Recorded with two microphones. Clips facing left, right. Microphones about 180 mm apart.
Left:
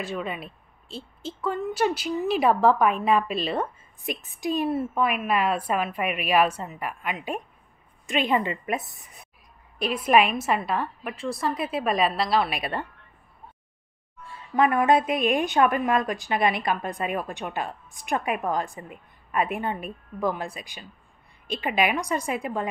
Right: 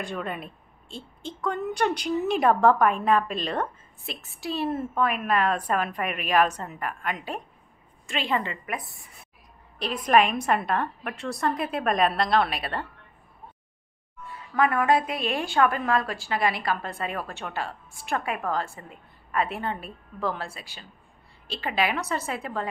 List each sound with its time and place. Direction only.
0.0 s a woman's voice: 5° left (ahead or behind)
8.1 s a woman's voice: 20° left (ahead or behind)
14.2 s a woman's voice: 25° left (ahead or behind)